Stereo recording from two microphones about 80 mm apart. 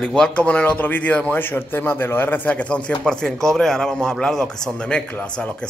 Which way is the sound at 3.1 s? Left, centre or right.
Centre.